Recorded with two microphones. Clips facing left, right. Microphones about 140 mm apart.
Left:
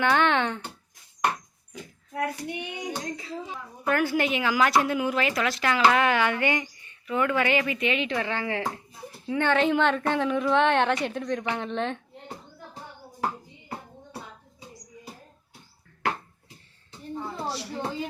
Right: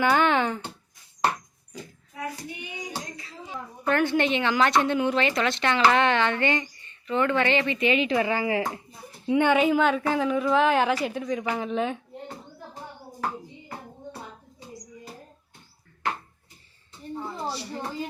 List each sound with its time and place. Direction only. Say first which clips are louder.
0.0 s speech: right 1 dB; 5° right (ahead or behind)
2.1 s child singing: left 5 dB; 65° left (ahead or behind)
3.8 s speech: right 2 dB; 5° left (ahead or behind)
17.2 s a sound: even; centre (ahead or behind)